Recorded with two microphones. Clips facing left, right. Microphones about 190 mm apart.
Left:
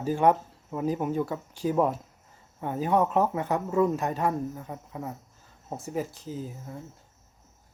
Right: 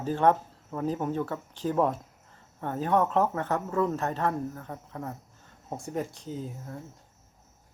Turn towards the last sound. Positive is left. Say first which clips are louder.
# even
turn(degrees=5)  # may be behind; listen again after turning